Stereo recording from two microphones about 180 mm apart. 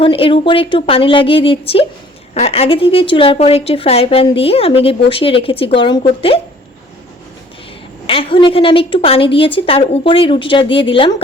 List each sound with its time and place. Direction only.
0.0 s a woman's voice: 30° left (ahead or behind)
8.0 s a woman's voice: 30° left (ahead or behind)